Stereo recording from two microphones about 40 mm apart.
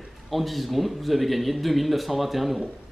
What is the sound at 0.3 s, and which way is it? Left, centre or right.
Speech, centre.